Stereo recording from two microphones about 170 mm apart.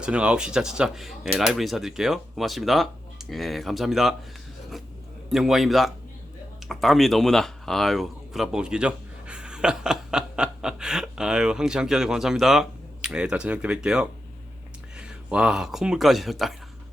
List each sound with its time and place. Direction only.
0.0 s speech: 5° right (ahead or behind)
5.3 s speech: centre (ahead or behind)